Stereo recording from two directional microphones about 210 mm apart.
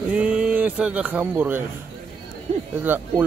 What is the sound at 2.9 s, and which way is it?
Speech, 10° right (ahead or behind).